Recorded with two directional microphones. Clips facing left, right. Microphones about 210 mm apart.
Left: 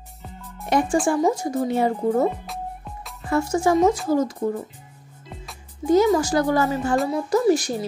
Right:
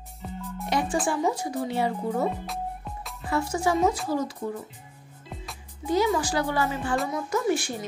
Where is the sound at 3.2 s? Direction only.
45° left (ahead or behind).